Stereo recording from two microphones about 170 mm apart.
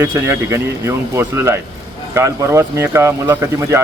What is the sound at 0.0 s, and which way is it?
Speech, 15° right (ahead or behind).